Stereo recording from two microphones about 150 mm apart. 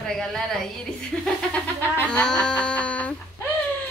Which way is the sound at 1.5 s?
5° left (ahead or behind).